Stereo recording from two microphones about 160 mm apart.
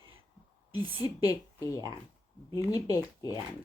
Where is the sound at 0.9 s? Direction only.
25° left (ahead or behind).